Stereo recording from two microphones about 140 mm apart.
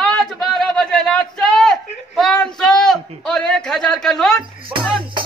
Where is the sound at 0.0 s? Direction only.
5° left (ahead or behind).